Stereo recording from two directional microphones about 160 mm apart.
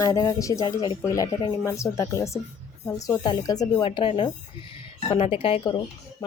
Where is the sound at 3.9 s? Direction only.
35° left (ahead or behind).